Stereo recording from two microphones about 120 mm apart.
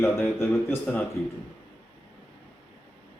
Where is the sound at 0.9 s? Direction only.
5° left (ahead or behind).